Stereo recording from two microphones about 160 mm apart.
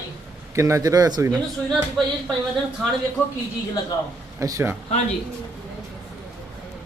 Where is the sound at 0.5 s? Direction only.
20° right (ahead or behind).